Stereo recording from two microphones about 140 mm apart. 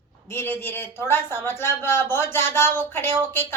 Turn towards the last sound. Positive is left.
turn(degrees=15)  # may be behind; listen again after turning